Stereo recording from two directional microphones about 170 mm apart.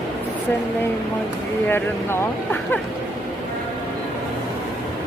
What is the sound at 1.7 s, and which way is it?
Speech, 10° left (ahead or behind).